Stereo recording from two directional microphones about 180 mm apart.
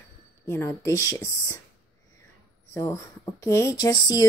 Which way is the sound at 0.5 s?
15° left (ahead or behind).